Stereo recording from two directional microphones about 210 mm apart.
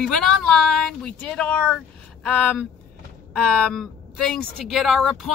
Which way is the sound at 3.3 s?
5° left (ahead or behind).